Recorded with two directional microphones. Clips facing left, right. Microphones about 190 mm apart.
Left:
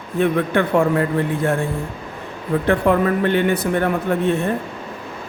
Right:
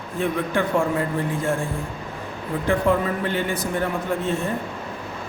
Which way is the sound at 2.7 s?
65° left (ahead or behind).